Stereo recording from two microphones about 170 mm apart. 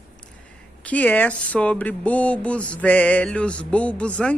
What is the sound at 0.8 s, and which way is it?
Speech, 10° left (ahead or behind).